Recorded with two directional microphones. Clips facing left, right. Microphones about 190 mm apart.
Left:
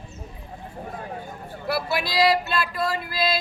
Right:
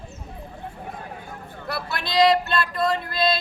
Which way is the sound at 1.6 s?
5° left (ahead or behind).